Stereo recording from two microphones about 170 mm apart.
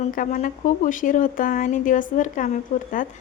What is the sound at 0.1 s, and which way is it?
A woman's voice, 50° left (ahead or behind).